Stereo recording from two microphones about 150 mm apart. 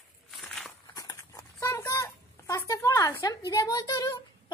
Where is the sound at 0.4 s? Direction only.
Centre (ahead or behind).